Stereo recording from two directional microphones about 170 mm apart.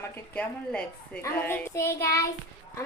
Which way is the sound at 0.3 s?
5° left (ahead or behind).